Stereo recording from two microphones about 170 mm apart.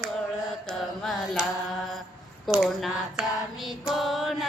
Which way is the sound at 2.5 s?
Centre (ahead or behind).